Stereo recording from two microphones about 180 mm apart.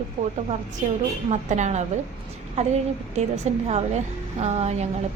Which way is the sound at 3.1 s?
40° right (ahead or behind).